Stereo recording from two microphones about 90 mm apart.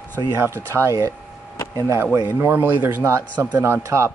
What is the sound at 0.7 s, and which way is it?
Speech, 35° right (ahead or behind).